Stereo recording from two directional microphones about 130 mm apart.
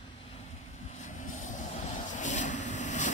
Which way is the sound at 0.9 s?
70° left (ahead or behind).